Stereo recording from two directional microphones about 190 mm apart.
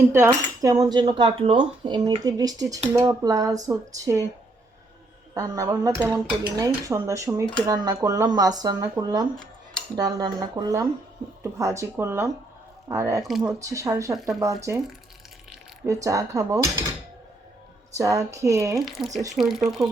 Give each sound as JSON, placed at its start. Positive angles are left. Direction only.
{"t": 0.6, "sound": "speech", "side_deg": -15}
{"t": 2.9, "sound": "dishes", "side_deg": -20}
{"t": 5.3, "sound": "dishes", "side_deg": -20}
{"t": 7.7, "sound": "speech", "side_deg": -20}
{"t": 11.4, "sound": "dishes", "side_deg": -15}
{"t": 15.9, "sound": "dishes", "side_deg": -15}
{"t": 17.9, "sound": "dishes", "side_deg": -15}
{"t": 18.9, "sound": "speech", "side_deg": 0}